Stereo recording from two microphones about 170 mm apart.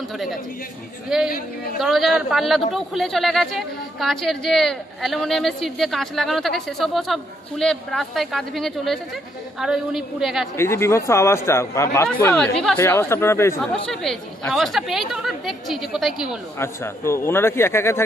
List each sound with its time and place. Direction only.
1.1 s a woman's voice: 5° right (ahead or behind)
10.5 s speech: 15° left (ahead or behind)
12.8 s speech: 15° left (ahead or behind)
14.5 s a woman's voice: centre (ahead or behind)
16.5 s speech: 15° left (ahead or behind)